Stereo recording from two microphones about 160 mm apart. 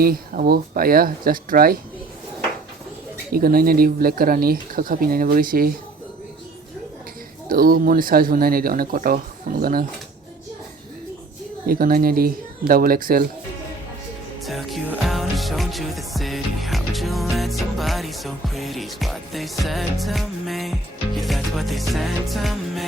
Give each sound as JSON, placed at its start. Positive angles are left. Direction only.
{"t": 0.0, "sound": "speech", "side_deg": -70}
{"t": 3.3, "sound": "speech", "side_deg": -65}
{"t": 7.4, "sound": "speech", "side_deg": -65}
{"t": 11.7, "sound": "speech", "side_deg": -65}
{"t": 14.4, "sound": "music", "side_deg": 0}